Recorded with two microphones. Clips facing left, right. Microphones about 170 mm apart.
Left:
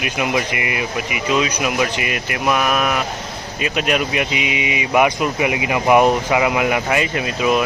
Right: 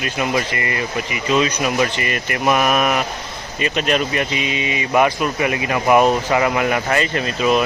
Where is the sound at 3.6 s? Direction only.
5° left (ahead or behind).